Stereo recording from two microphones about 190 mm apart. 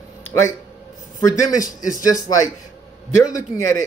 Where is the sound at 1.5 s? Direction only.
45° left (ahead or behind).